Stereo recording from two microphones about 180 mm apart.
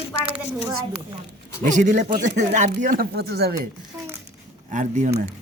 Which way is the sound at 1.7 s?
45° right (ahead or behind).